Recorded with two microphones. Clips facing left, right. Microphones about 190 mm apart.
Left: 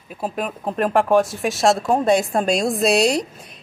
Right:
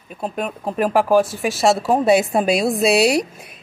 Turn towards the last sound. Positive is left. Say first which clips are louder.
# right 2 dB
turn(degrees=-5)  # may be behind; listen again after turning